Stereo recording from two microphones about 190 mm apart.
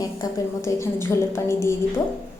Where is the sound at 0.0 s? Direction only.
20° left (ahead or behind).